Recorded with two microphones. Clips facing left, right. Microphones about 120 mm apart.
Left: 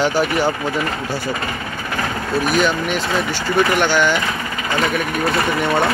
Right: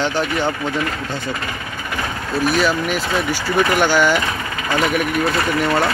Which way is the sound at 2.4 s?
Centre (ahead or behind).